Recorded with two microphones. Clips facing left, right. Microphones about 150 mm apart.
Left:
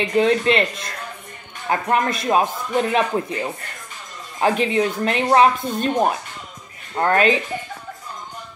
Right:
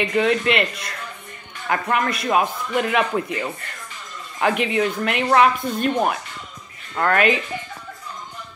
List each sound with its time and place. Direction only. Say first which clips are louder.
0.1 s speech: left 5 dB; 30° left (ahead or behind)